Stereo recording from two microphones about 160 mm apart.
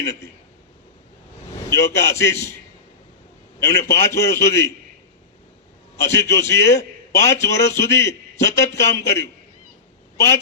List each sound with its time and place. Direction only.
1.7 s a man's voice: 20° left (ahead or behind)
3.6 s a man's voice: 20° left (ahead or behind)
6.0 s a man's voice: 20° left (ahead or behind)